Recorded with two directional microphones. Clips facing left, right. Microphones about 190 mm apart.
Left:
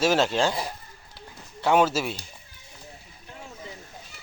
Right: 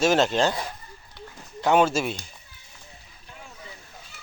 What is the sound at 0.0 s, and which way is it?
Speech, 10° left (ahead or behind).